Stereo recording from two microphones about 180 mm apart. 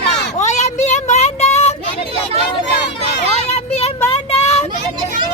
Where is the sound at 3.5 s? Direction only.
35° left (ahead or behind).